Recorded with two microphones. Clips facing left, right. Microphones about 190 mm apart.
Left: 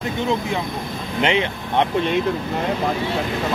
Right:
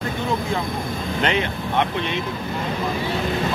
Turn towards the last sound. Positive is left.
turn(degrees=20)  # may be behind; listen again after turning